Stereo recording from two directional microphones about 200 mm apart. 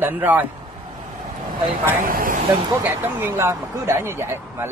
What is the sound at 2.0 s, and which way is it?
Speech, 45° right (ahead or behind).